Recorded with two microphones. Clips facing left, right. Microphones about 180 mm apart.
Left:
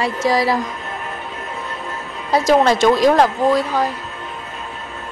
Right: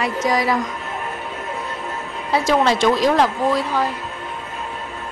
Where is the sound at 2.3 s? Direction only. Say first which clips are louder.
Left 3 dB; 40° left (ahead or behind).